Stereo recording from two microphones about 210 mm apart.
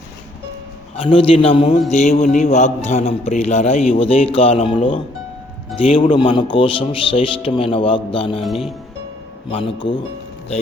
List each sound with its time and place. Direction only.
0.9 s a man's voice: 25° left (ahead or behind)
8.4 s speech: centre (ahead or behind)
9.5 s speech: 25° left (ahead or behind)